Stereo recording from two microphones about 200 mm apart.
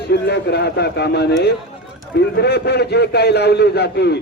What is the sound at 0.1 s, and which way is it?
A man's voice, 55° left (ahead or behind).